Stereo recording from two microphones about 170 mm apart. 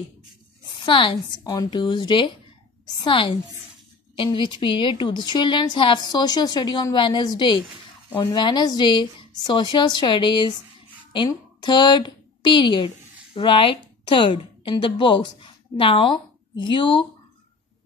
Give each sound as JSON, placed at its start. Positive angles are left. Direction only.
{"t": 0.7, "sound": "a woman's voice", "side_deg": 30}